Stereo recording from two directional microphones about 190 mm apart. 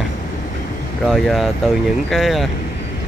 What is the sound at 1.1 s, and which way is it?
Speech, centre (ahead or behind).